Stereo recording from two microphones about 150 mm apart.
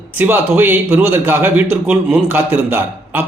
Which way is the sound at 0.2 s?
15° right (ahead or behind).